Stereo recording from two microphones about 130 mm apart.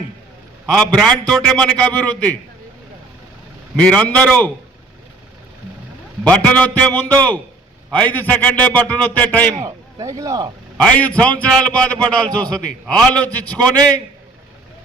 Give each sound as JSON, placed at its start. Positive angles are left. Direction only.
{"t": 0.7, "sound": "a man's voice", "side_deg": 5}
{"t": 3.8, "sound": "a man's voice", "side_deg": 10}
{"t": 6.2, "sound": "a man's voice", "side_deg": 10}
{"t": 9.6, "sound": "speech", "side_deg": -25}
{"t": 10.8, "sound": "a man's voice", "side_deg": 10}